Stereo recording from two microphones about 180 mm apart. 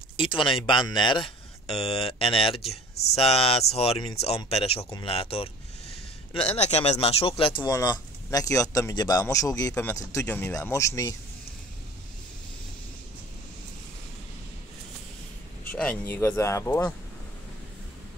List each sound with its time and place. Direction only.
0.2 s speech: 30° left (ahead or behind)
15.6 s speech: 10° left (ahead or behind)